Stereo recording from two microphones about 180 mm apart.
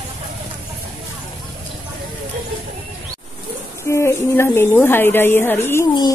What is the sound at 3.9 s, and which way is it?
A woman's voice, 15° left (ahead or behind).